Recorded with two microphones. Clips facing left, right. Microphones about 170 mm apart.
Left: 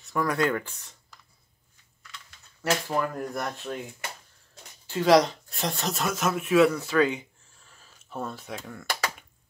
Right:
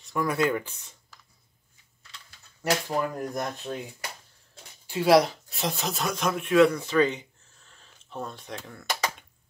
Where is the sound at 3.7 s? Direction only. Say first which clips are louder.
Even; 25° right (ahead or behind).